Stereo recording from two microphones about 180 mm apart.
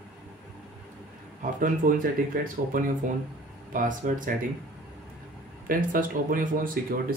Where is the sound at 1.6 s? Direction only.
50° right (ahead or behind).